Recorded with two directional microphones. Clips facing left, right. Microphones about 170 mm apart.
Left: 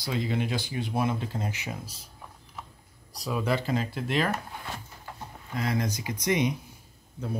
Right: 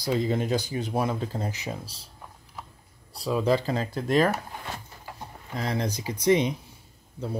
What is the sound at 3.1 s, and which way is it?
Speech, 30° right (ahead or behind).